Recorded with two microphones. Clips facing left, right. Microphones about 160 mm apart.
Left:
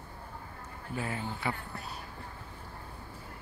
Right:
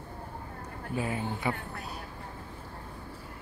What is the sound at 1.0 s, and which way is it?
Speech, 15° right (ahead or behind).